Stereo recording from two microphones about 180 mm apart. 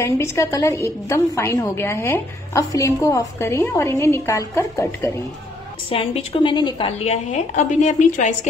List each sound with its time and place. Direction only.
0.0 s a woman's voice: 15° left (ahead or behind)
5.9 s a woman's voice: 30° left (ahead or behind)
7.1 s a woman's voice: 40° left (ahead or behind)